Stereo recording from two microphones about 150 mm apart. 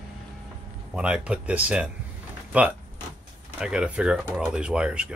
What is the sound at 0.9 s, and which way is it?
Speech, 5° right (ahead or behind).